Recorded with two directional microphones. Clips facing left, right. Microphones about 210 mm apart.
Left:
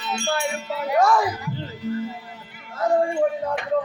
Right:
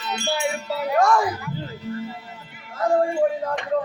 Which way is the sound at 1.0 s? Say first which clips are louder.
Even; centre (ahead or behind).